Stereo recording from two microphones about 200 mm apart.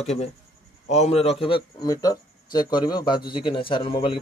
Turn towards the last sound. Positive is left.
turn(degrees=25)  # may be behind; listen again after turning